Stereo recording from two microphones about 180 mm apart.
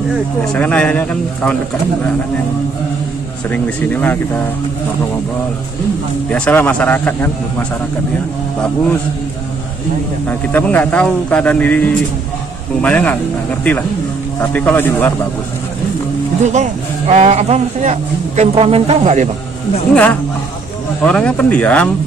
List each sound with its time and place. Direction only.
0.5 s a man's voice: 5° left (ahead or behind)
3.4 s a man's voice: 10° left (ahead or behind)
6.3 s a man's voice: 10° left (ahead or behind)
10.2 s a man's voice: 10° left (ahead or behind)
17.1 s speech: 40° right (ahead or behind)
19.9 s a man's voice: 5° left (ahead or behind)